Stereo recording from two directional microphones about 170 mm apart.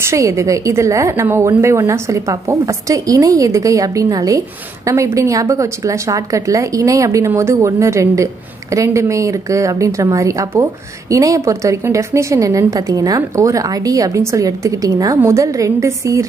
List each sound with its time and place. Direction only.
0.0 s a woman's voice: 15° right (ahead or behind)